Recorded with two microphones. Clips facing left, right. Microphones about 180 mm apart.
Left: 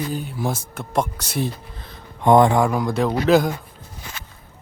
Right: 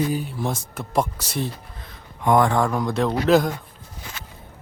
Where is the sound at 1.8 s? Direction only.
25° left (ahead or behind).